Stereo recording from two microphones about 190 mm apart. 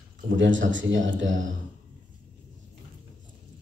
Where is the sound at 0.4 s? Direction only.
75° right (ahead or behind).